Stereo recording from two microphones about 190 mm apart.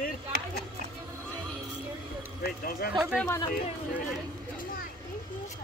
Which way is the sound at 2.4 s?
55° left (ahead or behind).